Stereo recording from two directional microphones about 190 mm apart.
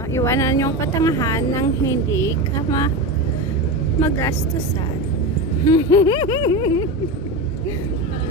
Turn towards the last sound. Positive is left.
turn(degrees=25)  # may be behind; listen again after turning